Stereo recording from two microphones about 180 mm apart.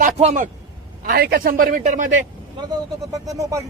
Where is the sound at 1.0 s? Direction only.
60° right (ahead or behind).